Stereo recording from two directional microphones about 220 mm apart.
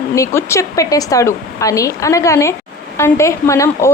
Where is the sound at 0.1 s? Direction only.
15° left (ahead or behind).